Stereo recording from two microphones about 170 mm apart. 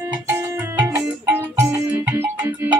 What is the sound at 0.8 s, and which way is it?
Music, 10° right (ahead or behind).